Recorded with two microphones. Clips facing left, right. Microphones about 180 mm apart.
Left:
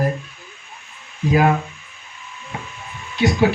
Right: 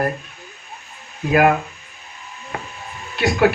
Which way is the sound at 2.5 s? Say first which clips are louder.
Right 2 dB; 65° right (ahead or behind).